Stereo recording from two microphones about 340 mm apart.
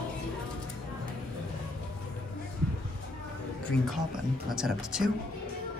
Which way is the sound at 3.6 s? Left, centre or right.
Centre.